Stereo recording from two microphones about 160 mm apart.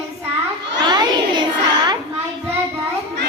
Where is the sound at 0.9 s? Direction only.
25° right (ahead or behind).